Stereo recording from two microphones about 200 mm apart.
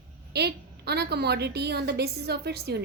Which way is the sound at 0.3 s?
55° right (ahead or behind).